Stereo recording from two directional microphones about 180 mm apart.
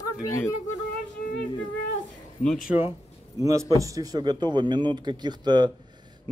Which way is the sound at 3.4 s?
15° right (ahead or behind).